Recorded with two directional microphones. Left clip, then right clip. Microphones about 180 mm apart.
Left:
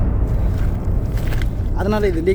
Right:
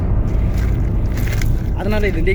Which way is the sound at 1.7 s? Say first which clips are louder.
Left 2 dB; 5° left (ahead or behind).